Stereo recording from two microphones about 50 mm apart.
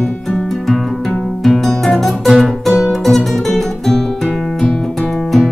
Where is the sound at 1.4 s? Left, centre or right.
Centre.